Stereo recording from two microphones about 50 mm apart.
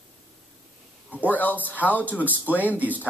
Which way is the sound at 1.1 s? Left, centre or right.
Right.